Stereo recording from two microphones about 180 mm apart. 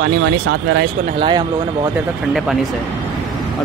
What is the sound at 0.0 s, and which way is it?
Speech, 90° right.